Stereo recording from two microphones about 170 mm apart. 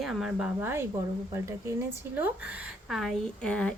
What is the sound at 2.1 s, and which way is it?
A woman's voice, 10° right (ahead or behind).